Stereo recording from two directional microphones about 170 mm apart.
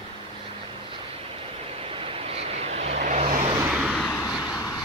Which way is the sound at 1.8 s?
30° right (ahead or behind).